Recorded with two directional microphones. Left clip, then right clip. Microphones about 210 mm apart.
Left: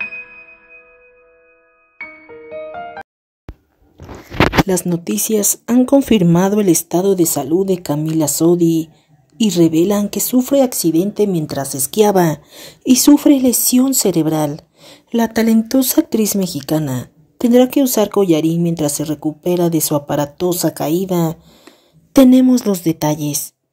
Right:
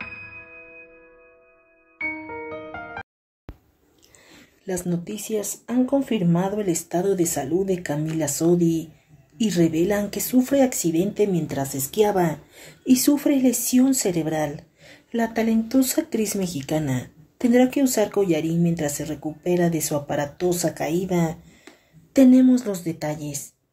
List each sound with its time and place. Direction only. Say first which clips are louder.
4.6 s speech: left 10 dB; 40° left (ahead or behind)